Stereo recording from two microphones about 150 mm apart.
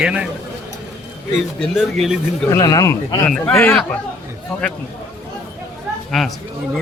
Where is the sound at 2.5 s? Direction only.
25° left (ahead or behind).